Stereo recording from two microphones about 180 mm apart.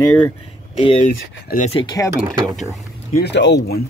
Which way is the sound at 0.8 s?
30° left (ahead or behind).